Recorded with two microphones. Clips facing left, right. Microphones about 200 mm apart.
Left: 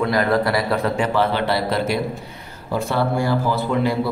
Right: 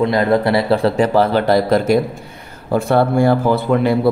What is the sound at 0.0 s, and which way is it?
Speech, 25° right (ahead or behind).